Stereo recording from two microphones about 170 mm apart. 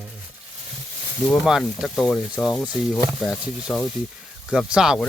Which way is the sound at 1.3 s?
5° right (ahead or behind).